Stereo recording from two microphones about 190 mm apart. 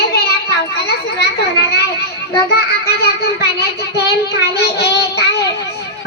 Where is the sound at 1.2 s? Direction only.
60° left (ahead or behind).